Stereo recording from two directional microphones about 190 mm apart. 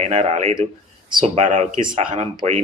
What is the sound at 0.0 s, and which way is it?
Speech, 35° right (ahead or behind).